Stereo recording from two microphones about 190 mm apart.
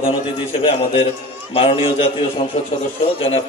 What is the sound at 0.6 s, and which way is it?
A man's voice, 30° left (ahead or behind).